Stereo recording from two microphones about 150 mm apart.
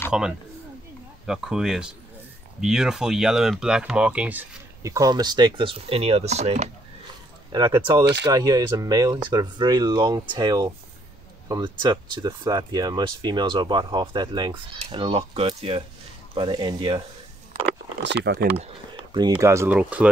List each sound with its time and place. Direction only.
0.1 s speech: 5° right (ahead or behind); by 6.7 s 45° right (ahead or behind)
7.5 s speech: 30° right (ahead or behind)
19.1 s speech: 25° right (ahead or behind)